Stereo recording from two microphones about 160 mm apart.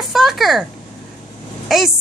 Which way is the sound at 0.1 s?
Centre (ahead or behind).